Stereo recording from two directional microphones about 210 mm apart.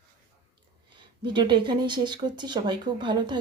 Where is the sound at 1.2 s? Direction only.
20° right (ahead or behind).